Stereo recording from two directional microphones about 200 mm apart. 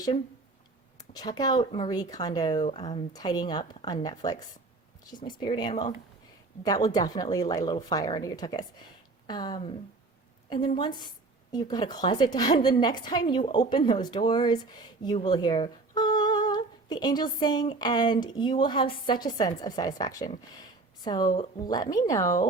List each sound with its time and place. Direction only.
0.9 s a woman's voice: 20° left (ahead or behind)
10.8 s a woman's voice: 20° left (ahead or behind)